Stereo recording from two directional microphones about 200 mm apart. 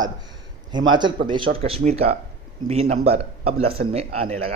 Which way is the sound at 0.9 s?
25° right (ahead or behind).